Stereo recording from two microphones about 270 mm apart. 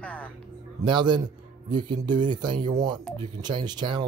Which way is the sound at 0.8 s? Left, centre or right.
Centre.